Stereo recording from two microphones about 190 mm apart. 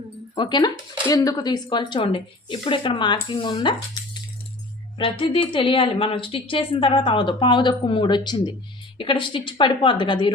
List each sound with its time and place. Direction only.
0.3 s speech: 25° left (ahead or behind)
4.9 s speech: 25° left (ahead or behind)